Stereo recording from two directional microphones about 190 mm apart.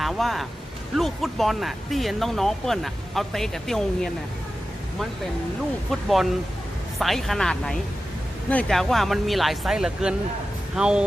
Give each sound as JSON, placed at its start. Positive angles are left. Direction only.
{"t": 0.0, "sound": "a sound", "side_deg": 0}
{"t": 0.9, "sound": "speech", "side_deg": 0}
{"t": 5.9, "sound": "speech", "side_deg": 0}